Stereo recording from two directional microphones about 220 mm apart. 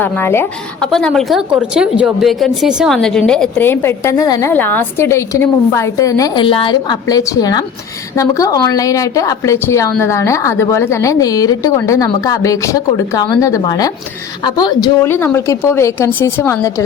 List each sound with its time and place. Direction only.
0.0 s a woman's voice: 10° left (ahead or behind)